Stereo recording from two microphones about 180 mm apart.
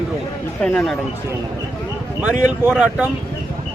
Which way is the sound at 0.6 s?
5° left (ahead or behind).